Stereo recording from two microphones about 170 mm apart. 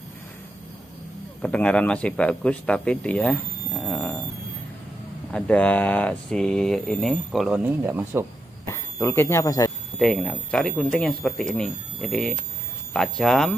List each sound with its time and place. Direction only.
1.4 s speech: 5° left (ahead or behind)
5.3 s speech: 10° left (ahead or behind); by 8.3 s 15° right (ahead or behind)
8.6 s speech: 15° left (ahead or behind)
9.9 s speech: 5° left (ahead or behind)